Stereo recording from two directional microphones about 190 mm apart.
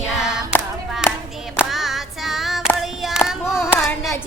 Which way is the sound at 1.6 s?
Centre (ahead or behind).